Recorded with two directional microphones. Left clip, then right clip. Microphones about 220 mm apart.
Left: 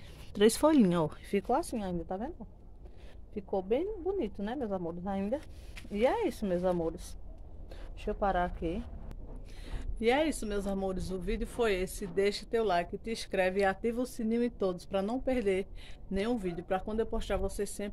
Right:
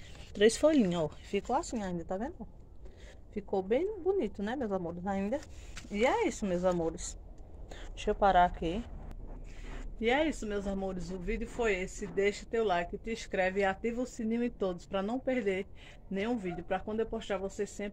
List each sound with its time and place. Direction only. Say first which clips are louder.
0.3 s speech: even; 20° left (ahead or behind)
2.0 s a woman's voice: right 1 dB; 15° right (ahead or behind)
3.3 s a woman's voice: right 1 dB; 15° right (ahead or behind)
8.1 s a woman's voice: right 6 dB; 15° right (ahead or behind)
9.9 s speech: left 1 dB; 15° left (ahead or behind)